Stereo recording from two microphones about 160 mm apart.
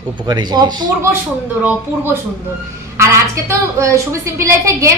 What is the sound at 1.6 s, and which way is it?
A woman's voice, 10° right (ahead or behind).